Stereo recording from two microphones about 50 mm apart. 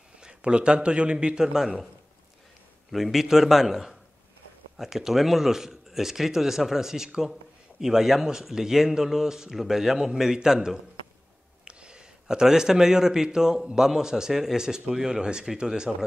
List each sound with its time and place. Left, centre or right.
0.2 s a man's voice: centre
2.9 s a man's voice: centre